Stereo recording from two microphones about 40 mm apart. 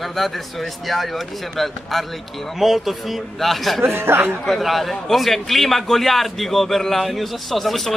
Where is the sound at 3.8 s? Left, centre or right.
Right.